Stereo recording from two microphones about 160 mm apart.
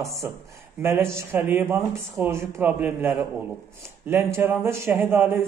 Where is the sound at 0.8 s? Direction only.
15° right (ahead or behind).